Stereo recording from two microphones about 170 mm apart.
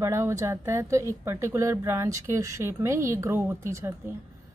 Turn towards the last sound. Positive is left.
turn(degrees=-15)  # may be behind; listen again after turning